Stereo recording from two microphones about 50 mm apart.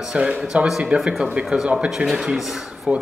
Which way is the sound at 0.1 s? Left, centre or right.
Right.